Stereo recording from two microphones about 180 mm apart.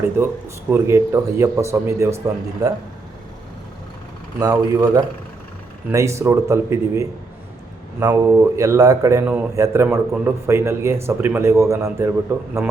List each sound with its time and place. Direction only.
0.0 s speech: 15° right (ahead or behind)
4.4 s speech: 20° right (ahead or behind)